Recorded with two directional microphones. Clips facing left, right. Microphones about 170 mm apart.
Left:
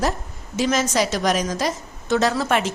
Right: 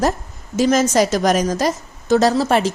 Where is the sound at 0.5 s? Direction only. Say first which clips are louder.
Right 5 dB; 45° right (ahead or behind).